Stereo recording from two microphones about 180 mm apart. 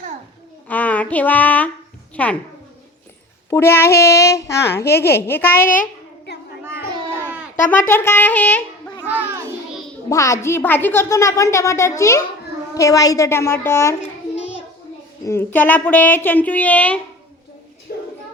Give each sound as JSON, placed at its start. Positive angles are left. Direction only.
{"t": 0.7, "sound": "a sound", "side_deg": 10}
{"t": 2.1, "sound": "a woman's voice", "side_deg": 5}
{"t": 3.5, "sound": "a woman's voice", "side_deg": 15}
{"t": 5.6, "sound": "a sound", "side_deg": 50}
{"t": 7.7, "sound": "a woman's voice", "side_deg": 10}
{"t": 10.1, "sound": "a woman's voice", "side_deg": 15}
{"t": 14.3, "sound": "child singing", "side_deg": 35}
{"t": 15.3, "sound": "a woman's voice", "side_deg": 10}
{"t": 17.9, "sound": "a sound", "side_deg": 55}